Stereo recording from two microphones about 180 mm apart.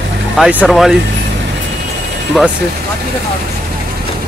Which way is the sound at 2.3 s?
Centre (ahead or behind).